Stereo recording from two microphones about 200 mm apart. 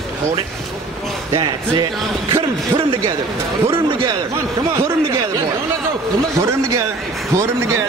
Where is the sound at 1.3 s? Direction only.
20° right (ahead or behind).